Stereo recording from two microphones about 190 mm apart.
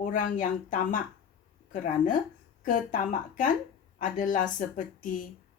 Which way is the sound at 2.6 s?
45° left (ahead or behind).